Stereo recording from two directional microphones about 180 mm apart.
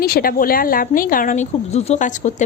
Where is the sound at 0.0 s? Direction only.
55° left (ahead or behind).